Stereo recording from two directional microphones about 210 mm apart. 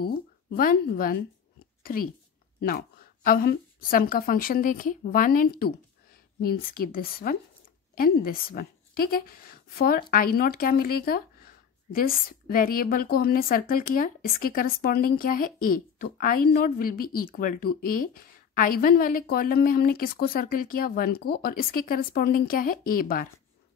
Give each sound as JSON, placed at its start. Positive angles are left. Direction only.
{"t": 0.0, "sound": "a woman's voice", "side_deg": 45}